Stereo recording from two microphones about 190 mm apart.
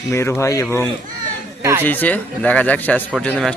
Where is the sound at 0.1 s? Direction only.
15° left (ahead or behind).